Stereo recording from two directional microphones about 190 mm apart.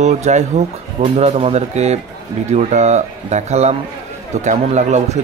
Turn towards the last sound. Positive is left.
turn(degrees=-35)  # may be behind; listen again after turning